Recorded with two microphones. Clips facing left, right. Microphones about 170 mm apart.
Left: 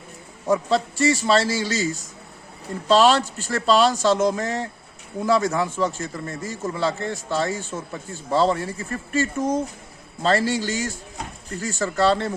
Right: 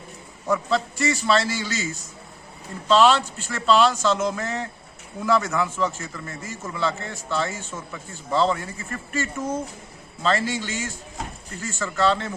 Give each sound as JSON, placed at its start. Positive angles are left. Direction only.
{"t": 0.4, "sound": "a man's voice", "side_deg": 30}